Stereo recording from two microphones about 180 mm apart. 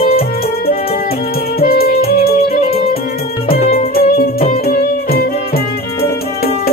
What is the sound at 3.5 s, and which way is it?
Music, 40° left (ahead or behind).